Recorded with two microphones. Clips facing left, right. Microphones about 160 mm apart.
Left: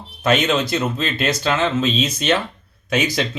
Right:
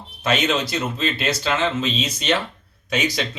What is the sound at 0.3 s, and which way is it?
Speech, 50° left (ahead or behind).